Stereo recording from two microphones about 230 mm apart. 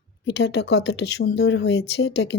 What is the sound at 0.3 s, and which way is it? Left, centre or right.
Speech, left.